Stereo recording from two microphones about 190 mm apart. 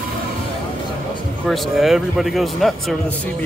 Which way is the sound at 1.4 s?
Centre (ahead or behind).